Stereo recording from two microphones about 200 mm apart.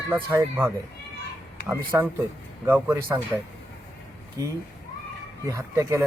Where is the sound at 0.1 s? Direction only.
10° right (ahead or behind).